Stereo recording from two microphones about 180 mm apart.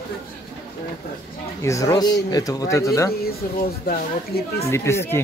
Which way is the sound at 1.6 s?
15° left (ahead or behind).